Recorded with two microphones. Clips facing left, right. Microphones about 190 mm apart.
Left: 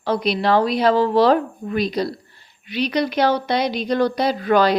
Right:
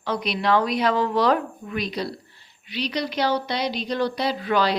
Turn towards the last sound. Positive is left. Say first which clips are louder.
# left 5 dB
turn(degrees=50)  # may be behind; listen again after turning